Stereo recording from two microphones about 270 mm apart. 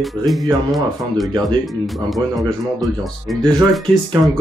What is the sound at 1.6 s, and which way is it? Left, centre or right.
Speech, centre.